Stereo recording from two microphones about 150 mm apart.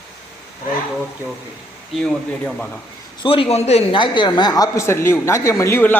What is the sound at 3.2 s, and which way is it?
A man's voice, 35° left (ahead or behind).